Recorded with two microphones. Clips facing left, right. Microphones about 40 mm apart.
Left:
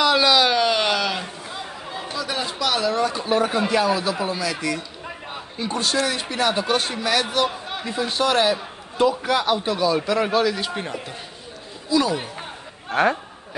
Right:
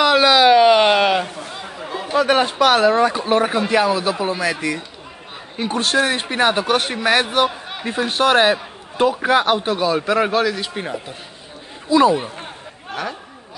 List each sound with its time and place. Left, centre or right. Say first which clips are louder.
0.0 s a sound: right 4 dB; right
0.3 s a sound: right 7 dB; centre; by 1.3 s right
1.5 s chatter: right 3 dB; centre
2.1 s a man's voice: right 12 dB; right
5.6 s speech: right 5 dB; right
7.4 s a sound: right 3 dB; centre
7.8 s a man's voice: right 5 dB; right
10.4 s a man's voice: right 2 dB; centre
11.9 s a man's voice: right 7 dB; right
12.9 s speech: left 8 dB; left